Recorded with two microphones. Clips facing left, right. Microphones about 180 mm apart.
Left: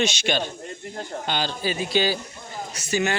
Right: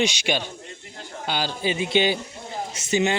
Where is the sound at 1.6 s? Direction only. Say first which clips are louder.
Right 2 dB; 20° right (ahead or behind).